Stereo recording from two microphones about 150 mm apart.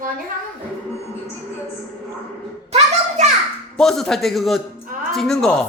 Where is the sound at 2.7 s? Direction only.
50° right (ahead or behind).